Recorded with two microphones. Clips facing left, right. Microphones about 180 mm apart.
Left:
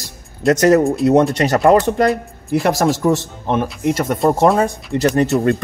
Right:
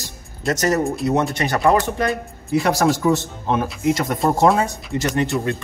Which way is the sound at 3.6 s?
Centre (ahead or behind).